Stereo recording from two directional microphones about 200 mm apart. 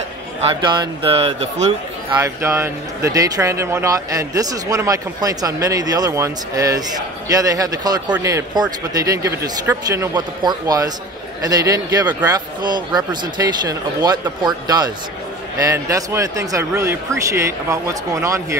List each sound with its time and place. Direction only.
0.4 s speech: 25° right (ahead or behind)
2.1 s speech: 15° right (ahead or behind)